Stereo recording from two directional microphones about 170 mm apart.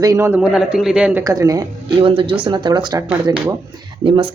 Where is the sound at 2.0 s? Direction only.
30° right (ahead or behind).